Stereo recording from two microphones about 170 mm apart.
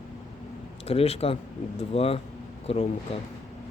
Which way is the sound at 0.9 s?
35° left (ahead or behind).